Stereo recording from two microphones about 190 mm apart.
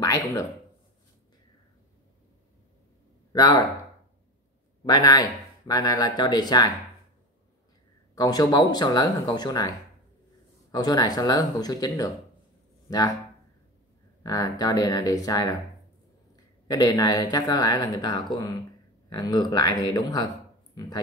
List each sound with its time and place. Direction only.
3.3 s speech: 20° left (ahead or behind)
4.8 s speech: 20° left (ahead or behind)
8.1 s speech: 20° left (ahead or behind)
14.2 s speech: 20° left (ahead or behind)
16.6 s speech: 20° left (ahead or behind)